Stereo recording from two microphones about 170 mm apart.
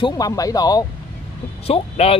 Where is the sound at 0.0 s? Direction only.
20° left (ahead or behind).